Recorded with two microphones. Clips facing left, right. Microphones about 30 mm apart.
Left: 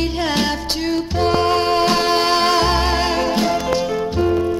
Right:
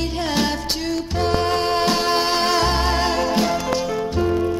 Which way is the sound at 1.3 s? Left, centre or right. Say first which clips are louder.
Left 4 dB; left.